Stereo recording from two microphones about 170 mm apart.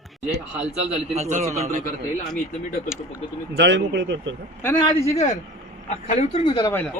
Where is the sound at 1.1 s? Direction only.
40° right (ahead or behind).